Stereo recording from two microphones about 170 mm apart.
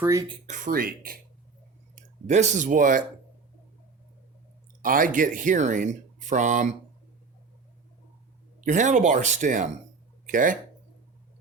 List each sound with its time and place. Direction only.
0.0 s speech: 15° right (ahead or behind)
0.3 s speech: 45° right (ahead or behind); by 1.2 s 60° right (ahead or behind)
2.2 s speech: 45° right (ahead or behind)
4.8 s speech: 55° right (ahead or behind)
8.6 s speech: 45° right (ahead or behind)